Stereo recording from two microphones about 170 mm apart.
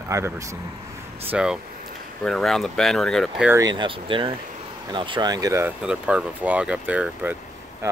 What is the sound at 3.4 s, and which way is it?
Speech, 20° right (ahead or behind).